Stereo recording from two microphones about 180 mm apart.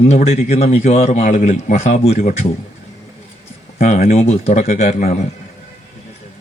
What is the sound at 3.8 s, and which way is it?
Speech, 40° left (ahead or behind).